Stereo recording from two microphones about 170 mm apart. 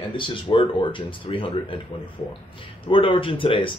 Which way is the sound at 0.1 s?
30° left (ahead or behind).